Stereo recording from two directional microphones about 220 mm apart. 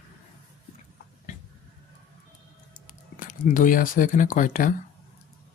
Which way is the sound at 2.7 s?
35° left (ahead or behind).